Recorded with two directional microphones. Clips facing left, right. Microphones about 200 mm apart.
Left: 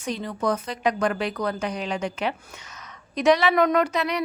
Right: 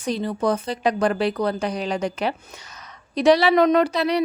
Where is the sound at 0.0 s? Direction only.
35° right (ahead or behind).